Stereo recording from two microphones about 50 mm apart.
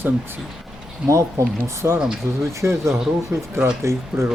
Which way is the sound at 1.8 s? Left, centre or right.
Right.